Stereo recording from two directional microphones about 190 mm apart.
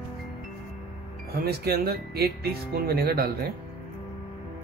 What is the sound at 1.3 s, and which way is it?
Speech, 55° right (ahead or behind).